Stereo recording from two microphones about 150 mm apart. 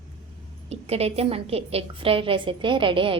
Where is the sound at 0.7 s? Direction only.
45° right (ahead or behind).